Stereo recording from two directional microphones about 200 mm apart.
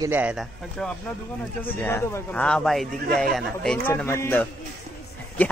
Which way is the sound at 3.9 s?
15° left (ahead or behind).